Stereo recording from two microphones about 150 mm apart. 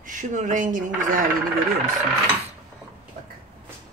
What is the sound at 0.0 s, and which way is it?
Speech, 60° right (ahead or behind).